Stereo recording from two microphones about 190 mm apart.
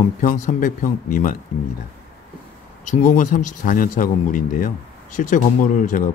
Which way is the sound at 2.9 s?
45° left (ahead or behind).